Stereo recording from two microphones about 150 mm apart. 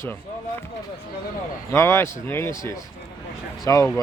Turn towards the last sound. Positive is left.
turn(degrees=20)  # may be behind; listen again after turning